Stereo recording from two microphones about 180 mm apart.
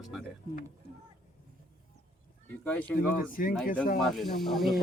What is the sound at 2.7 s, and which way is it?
Speech, 10° left (ahead or behind).